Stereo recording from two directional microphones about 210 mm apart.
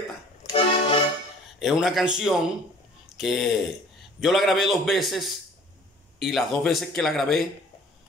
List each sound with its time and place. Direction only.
0.5 s accordion: 25° left (ahead or behind)
1.6 s speech: centre (ahead or behind)